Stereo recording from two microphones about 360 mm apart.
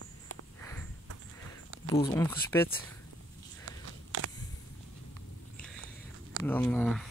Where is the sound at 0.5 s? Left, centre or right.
Centre.